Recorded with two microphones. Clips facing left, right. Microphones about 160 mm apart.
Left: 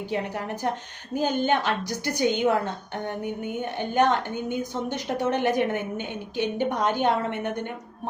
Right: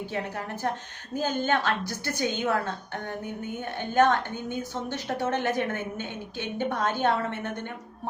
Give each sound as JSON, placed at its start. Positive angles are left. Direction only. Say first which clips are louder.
{"t": 0.1, "sound": "a woman's voice", "louder": "left 4 dB", "side_deg": 15}